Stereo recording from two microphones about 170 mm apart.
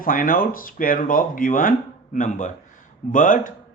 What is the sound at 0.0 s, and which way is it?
Speech, 55° left (ahead or behind).